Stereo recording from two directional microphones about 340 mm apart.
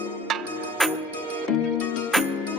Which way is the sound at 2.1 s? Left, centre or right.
Centre.